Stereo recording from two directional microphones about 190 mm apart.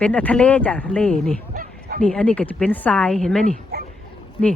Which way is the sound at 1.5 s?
50° right (ahead or behind).